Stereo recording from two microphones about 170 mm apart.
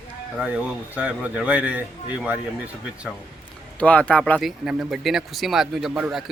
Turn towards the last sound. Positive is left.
turn(degrees=-5)  # may be behind; listen again after turning